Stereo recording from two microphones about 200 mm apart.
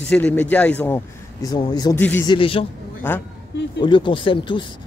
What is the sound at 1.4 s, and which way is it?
Speech, 20° left (ahead or behind).